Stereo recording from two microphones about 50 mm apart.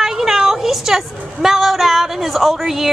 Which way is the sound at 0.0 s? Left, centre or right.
Centre.